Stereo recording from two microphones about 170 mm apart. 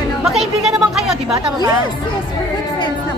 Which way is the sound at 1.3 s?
20° right (ahead or behind).